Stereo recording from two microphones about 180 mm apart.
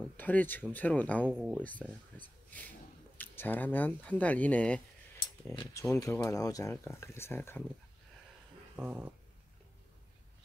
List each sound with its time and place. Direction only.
0.2 s speech: 10° left (ahead or behind)
1.3 s speech: 5° right (ahead or behind)
1.6 s speech: 10° left (ahead or behind)
5.6 s speech: 15° left (ahead or behind)
8.7 s speech: 10° right (ahead or behind)